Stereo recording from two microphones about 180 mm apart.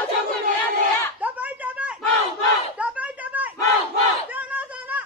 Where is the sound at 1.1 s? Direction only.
10° right (ahead or behind).